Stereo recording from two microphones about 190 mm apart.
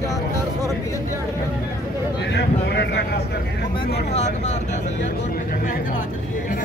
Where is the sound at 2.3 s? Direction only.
60° left (ahead or behind).